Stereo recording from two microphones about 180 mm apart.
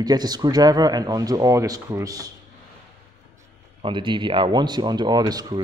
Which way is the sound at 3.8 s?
25° right (ahead or behind).